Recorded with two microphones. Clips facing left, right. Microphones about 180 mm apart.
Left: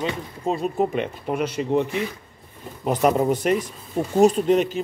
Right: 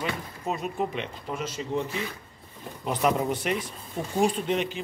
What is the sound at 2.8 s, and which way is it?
A man's voice, 45° left (ahead or behind).